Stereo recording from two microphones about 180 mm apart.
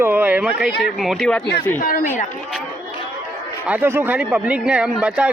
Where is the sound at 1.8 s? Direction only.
50° left (ahead or behind).